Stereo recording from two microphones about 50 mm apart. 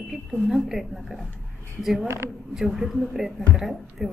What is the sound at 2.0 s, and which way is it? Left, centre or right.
Speech, right.